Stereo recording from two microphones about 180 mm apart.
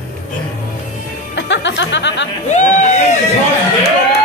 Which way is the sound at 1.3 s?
80° left.